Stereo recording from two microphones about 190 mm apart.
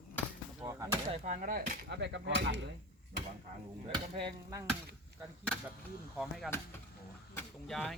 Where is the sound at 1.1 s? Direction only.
40° right (ahead or behind).